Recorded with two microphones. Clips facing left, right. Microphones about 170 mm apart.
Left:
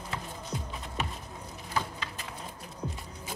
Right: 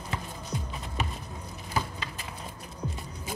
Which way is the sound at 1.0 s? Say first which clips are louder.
Right 1 dB; centre (ahead or behind).